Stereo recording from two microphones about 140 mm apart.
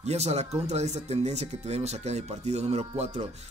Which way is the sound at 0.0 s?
50° right (ahead or behind).